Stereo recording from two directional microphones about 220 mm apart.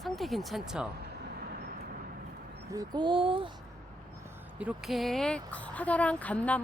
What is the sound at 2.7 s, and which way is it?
Speech, 20° right (ahead or behind).